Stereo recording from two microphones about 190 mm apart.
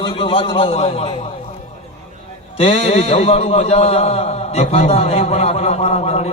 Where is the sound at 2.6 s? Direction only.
30° left (ahead or behind).